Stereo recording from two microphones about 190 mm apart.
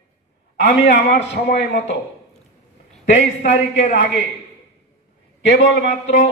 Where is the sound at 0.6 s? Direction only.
65° left (ahead or behind).